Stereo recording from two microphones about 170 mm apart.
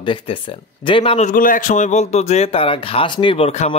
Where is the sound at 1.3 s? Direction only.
55° left (ahead or behind).